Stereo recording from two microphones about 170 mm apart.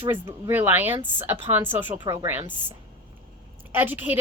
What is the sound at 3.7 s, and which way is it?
Speech, 10° right (ahead or behind).